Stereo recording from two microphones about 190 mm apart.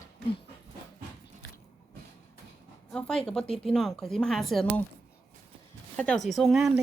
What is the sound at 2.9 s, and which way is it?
A woman's voice, 5° left (ahead or behind).